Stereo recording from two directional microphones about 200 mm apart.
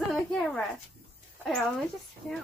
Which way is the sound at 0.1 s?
Centre (ahead or behind).